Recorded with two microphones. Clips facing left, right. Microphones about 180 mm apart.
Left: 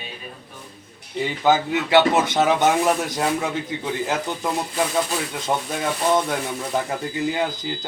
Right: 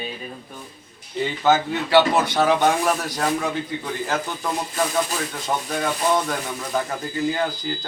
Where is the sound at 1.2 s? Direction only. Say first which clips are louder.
Even; 10° left (ahead or behind).